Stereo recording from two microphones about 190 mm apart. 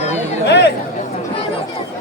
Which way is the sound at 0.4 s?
65° left (ahead or behind).